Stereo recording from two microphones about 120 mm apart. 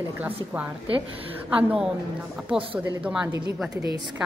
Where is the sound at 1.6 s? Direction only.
10° right (ahead or behind).